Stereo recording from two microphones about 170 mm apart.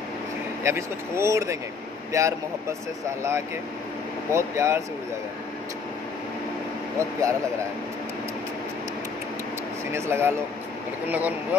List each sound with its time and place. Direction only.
0.7 s speech: 15° right (ahead or behind)
4.3 s speech: 15° right (ahead or behind)
7.0 s speech: 15° right (ahead or behind)
9.9 s speech: 15° right (ahead or behind)